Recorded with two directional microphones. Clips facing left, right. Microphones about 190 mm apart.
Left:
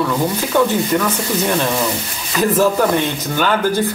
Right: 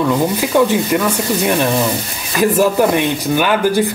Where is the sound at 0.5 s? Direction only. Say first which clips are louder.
Right 2 dB; 15° right (ahead or behind).